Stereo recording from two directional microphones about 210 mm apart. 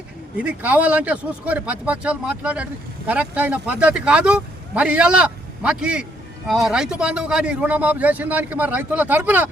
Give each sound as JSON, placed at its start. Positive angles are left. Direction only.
{"t": 0.3, "sound": "a man's voice", "side_deg": -5}